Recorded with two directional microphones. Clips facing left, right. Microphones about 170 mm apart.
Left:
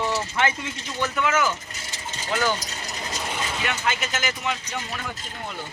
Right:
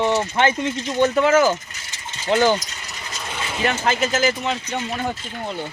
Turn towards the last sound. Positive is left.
turn(degrees=-30)  # may be behind; listen again after turning